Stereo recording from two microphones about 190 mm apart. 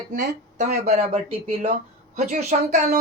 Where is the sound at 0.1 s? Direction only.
40° right (ahead or behind).